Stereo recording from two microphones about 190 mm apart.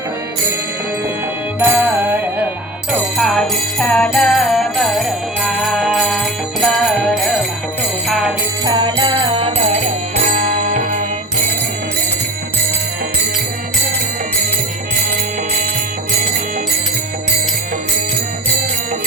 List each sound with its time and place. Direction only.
1.5 s music: 10° right (ahead or behind)
2.9 s jingle bell: centre (ahead or behind)
8.6 s music: 25° right (ahead or behind)